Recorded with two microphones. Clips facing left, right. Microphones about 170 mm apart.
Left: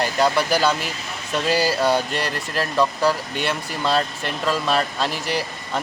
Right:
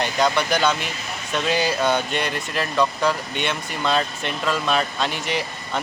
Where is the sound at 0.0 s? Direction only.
5° left (ahead or behind).